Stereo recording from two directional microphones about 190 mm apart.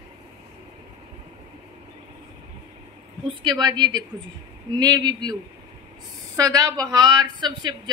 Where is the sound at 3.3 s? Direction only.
25° right (ahead or behind).